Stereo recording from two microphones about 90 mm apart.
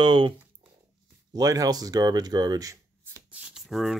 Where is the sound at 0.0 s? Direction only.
65° right (ahead or behind).